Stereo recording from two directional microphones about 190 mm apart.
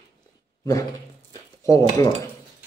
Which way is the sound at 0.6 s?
15° left (ahead or behind).